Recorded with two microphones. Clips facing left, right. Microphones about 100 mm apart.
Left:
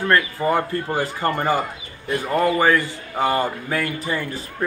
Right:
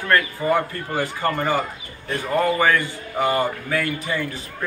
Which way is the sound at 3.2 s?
20° left (ahead or behind).